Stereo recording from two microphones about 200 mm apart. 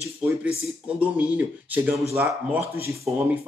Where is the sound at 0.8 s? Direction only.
5° right (ahead or behind).